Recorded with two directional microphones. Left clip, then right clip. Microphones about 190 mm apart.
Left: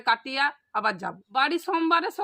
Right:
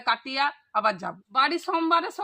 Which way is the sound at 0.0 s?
30° left (ahead or behind).